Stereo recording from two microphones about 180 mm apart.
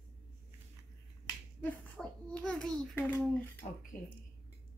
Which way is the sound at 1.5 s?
5° left (ahead or behind).